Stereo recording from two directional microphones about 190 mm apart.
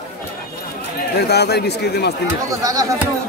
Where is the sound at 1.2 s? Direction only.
60° left (ahead or behind).